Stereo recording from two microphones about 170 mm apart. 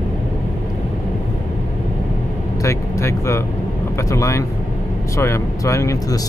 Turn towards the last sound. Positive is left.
turn(degrees=15)  # may be behind; listen again after turning